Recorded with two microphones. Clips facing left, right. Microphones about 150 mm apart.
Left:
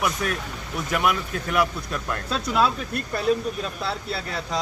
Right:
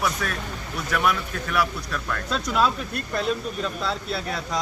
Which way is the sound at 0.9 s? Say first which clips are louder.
Even; 20° left (ahead or behind).